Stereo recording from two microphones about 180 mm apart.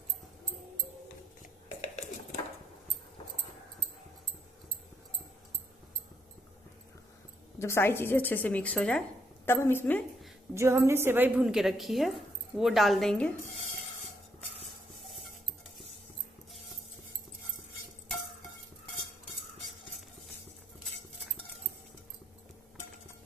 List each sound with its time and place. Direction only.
1.4 s whispering: 40° left (ahead or behind)
7.5 s a woman's voice: 15° left (ahead or behind)
10.5 s a woman's voice: 15° right (ahead or behind); by 13.3 s 5° left (ahead or behind)